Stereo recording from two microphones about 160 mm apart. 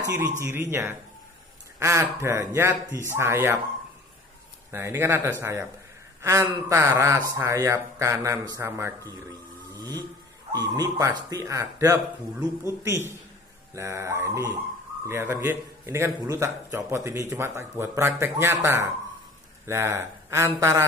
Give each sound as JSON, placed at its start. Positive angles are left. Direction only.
{"t": 0.4, "sound": "a man's voice", "side_deg": -15}
{"t": 4.6, "sound": "a man's voice", "side_deg": -15}
{"t": 10.5, "sound": "speech", "side_deg": -25}
{"t": 13.7, "sound": "a man's voice", "side_deg": -15}